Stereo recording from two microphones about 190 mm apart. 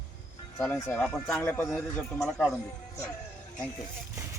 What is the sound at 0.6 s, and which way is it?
Speech, 10° left (ahead or behind).